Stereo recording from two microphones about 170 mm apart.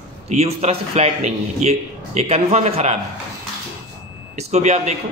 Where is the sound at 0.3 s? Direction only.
40° right (ahead or behind).